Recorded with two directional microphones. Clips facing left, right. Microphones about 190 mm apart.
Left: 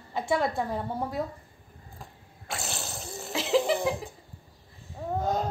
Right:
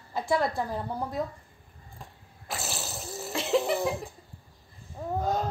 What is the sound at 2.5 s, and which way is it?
Sneeze, centre (ahead or behind).